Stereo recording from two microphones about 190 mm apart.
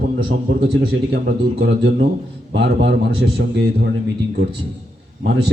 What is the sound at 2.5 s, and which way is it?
A man's voice, 65° right (ahead or behind).